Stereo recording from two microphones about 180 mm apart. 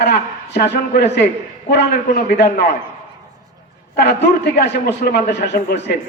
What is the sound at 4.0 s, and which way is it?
A man's voice, 65° left (ahead or behind).